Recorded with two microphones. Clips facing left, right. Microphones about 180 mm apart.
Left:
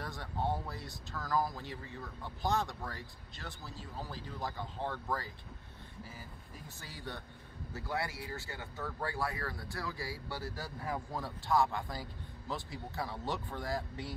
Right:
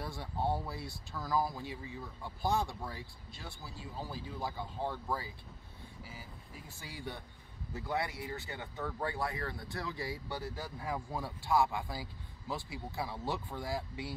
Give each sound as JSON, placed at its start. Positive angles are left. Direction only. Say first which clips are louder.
{"t": 0.0, "sound": "speech", "louder": "right 1 dB", "side_deg": -10}
{"t": 6.8, "sound": "speech", "louder": "right 2 dB", "side_deg": -15}